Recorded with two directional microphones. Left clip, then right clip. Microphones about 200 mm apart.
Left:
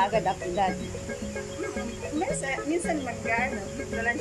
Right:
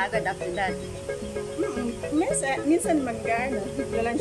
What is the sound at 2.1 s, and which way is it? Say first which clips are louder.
Speech: right 4 dB; 15° right (ahead or behind).